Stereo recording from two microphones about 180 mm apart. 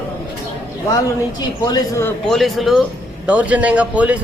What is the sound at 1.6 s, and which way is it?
Speech, 20° left (ahead or behind).